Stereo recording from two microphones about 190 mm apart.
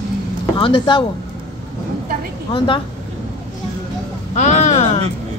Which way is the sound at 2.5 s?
25° left (ahead or behind).